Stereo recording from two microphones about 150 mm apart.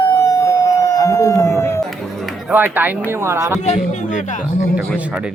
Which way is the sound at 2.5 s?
10° right (ahead or behind).